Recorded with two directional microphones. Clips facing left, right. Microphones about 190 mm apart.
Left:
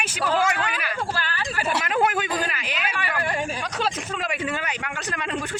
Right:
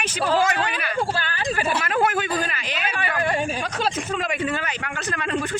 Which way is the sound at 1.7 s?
15° left (ahead or behind).